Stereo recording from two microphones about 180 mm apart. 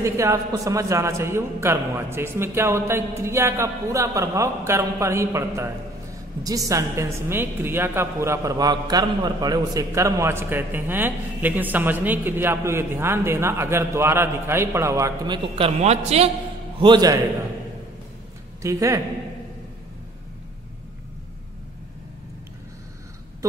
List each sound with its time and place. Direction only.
0.0 s a woman's voice: 15° right (ahead or behind)
18.6 s a woman's voice: 15° right (ahead or behind)